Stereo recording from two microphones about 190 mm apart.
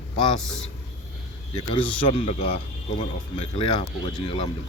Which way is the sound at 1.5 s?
25° left (ahead or behind).